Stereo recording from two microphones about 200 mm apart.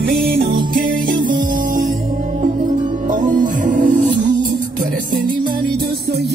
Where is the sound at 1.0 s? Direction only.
40° right (ahead or behind).